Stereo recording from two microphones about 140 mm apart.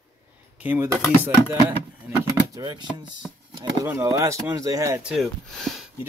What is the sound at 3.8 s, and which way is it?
Speech, 20° right (ahead or behind).